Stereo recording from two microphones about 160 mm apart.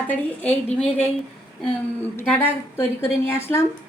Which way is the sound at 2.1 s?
10° left (ahead or behind).